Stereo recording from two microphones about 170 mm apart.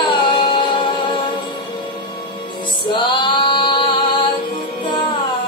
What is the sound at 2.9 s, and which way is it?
Female singing, 30° left (ahead or behind).